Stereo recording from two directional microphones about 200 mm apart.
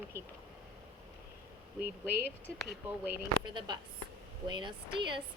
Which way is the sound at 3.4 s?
25° right (ahead or behind).